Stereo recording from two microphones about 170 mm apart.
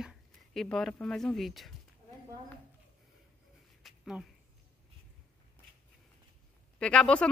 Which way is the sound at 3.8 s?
5° right (ahead or behind).